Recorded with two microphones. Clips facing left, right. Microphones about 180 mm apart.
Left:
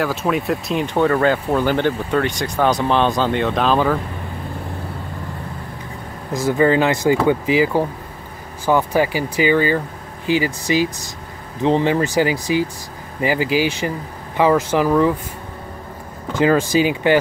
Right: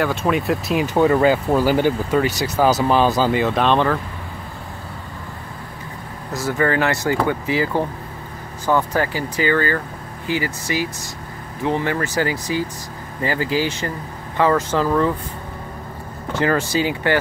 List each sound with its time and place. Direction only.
0.0 s speech: centre (ahead or behind)
6.3 s speech: 15° left (ahead or behind)
16.3 s speech: 15° left (ahead or behind)